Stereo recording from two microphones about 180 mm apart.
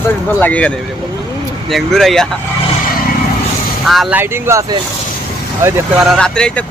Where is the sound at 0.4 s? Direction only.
10° left (ahead or behind).